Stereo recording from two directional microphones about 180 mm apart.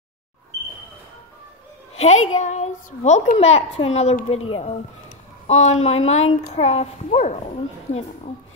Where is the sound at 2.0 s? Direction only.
40° left (ahead or behind).